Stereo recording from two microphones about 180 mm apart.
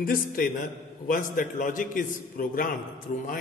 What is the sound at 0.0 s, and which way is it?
A man's voice, 50° left (ahead or behind).